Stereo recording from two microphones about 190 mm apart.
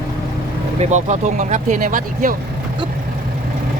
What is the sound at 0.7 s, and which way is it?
Speech, 40° right (ahead or behind).